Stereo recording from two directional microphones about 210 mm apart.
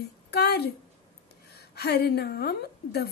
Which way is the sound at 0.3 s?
50° left (ahead or behind).